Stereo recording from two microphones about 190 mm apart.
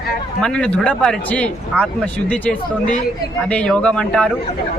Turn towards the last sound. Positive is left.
turn(degrees=5)  # may be behind; listen again after turning